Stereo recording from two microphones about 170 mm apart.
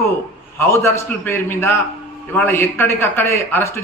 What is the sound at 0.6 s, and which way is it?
A man's voice, 15° left (ahead or behind).